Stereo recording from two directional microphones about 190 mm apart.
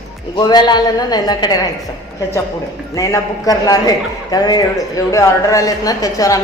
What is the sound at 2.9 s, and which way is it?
A man's voice, 20° left (ahead or behind).